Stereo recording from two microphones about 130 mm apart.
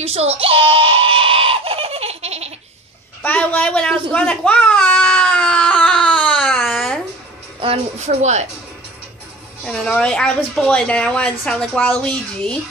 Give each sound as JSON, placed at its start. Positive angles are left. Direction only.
{"t": 0.0, "sound": "screaming", "side_deg": -50}
{"t": 3.2, "sound": "speech", "side_deg": 10}
{"t": 4.1, "sound": "baby cry", "side_deg": 10}
{"t": 7.6, "sound": "speech", "side_deg": -50}
{"t": 9.7, "sound": "speech", "side_deg": 5}